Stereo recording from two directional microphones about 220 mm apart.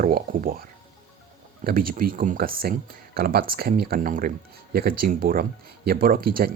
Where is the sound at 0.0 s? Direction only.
40° right (ahead or behind).